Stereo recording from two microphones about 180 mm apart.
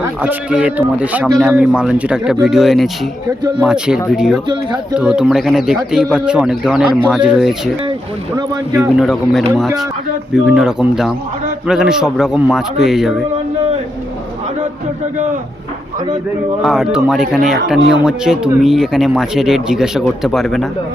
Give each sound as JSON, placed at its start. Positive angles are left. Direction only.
{"t": 0.0, "sound": "a man's voice", "side_deg": -10}
{"t": 4.4, "sound": "speech", "side_deg": -25}
{"t": 4.9, "sound": "a man's voice", "side_deg": -5}
{"t": 8.4, "sound": "speech", "side_deg": -20}
{"t": 9.0, "sound": "a man's voice", "side_deg": 0}
{"t": 10.5, "sound": "a man's voice", "side_deg": -5}
{"t": 16.6, "sound": "a man's voice", "side_deg": 0}
{"t": 17.7, "sound": "speech", "side_deg": -80}
{"t": 18.0, "sound": "a man's voice", "side_deg": -5}